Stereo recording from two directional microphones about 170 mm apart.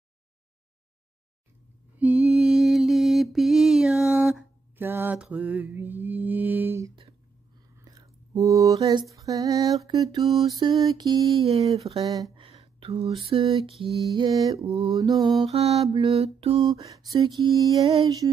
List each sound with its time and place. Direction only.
2.0 s mantra: 10° right (ahead or behind)
7.8 s a sound: 20° right (ahead or behind)
9.1 s lullaby: 20° right (ahead or behind)
11.7 s mantra: 35° right (ahead or behind)
12.1 s speech: 25° right (ahead or behind)
12.8 s mantra: 35° right (ahead or behind)
14.1 s lullaby: 25° right (ahead or behind)
15.5 s mantra: 35° right (ahead or behind)
16.6 s lullaby: 20° right (ahead or behind)